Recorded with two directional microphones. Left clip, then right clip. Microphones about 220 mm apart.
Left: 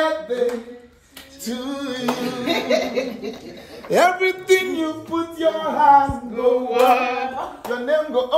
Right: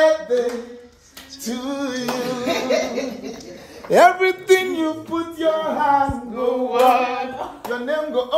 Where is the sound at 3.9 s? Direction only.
Centre (ahead or behind).